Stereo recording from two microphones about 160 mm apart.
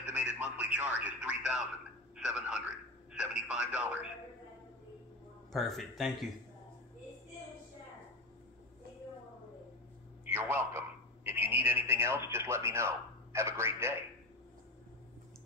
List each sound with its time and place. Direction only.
0.1 s speech: 5° right (ahead or behind)
5.5 s speech: centre (ahead or behind)
10.2 s a man's voice: 15° right (ahead or behind)